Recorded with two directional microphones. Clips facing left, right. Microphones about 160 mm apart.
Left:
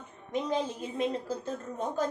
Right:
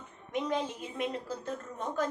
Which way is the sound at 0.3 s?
35° left (ahead or behind).